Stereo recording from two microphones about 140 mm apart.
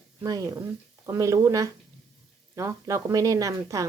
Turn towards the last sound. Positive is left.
turn(degrees=-25)  # may be behind; listen again after turning